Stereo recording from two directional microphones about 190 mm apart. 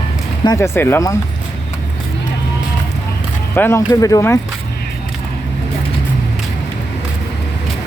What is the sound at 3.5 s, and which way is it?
Speech, 10° left (ahead or behind).